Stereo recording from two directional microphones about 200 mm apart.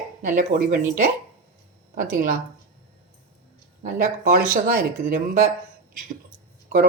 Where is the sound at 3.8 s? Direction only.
40° right (ahead or behind).